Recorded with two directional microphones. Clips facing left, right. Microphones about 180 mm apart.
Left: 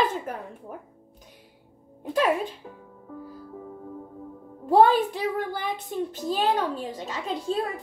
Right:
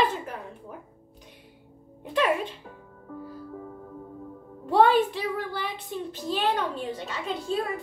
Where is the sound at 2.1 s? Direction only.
40° left (ahead or behind).